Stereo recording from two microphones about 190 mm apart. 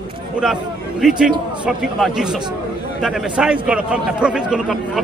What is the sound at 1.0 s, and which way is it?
Speech, 5° right (ahead or behind).